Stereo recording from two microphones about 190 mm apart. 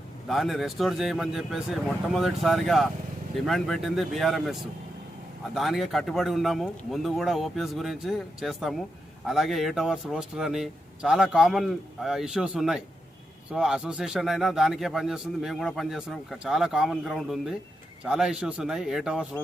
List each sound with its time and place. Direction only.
0.3 s a man's voice: centre (ahead or behind)
5.5 s a man's voice: centre (ahead or behind)